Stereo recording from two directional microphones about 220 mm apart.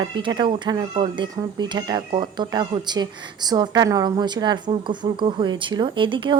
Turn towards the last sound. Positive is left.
turn(degrees=-20)  # may be behind; listen again after turning